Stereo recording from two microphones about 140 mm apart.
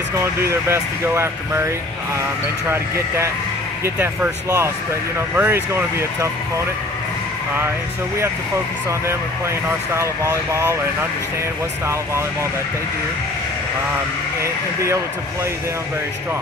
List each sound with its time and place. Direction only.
0.2 s speech: 20° right (ahead or behind)
3.8 s speech: 15° right (ahead or behind)
9.9 s speech: 20° right (ahead or behind)
14.4 s speech: 20° right (ahead or behind)